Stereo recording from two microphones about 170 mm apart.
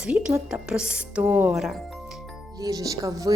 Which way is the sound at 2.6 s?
20° right (ahead or behind).